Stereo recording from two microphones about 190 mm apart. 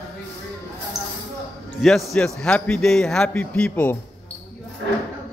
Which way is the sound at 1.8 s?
Centre (ahead or behind).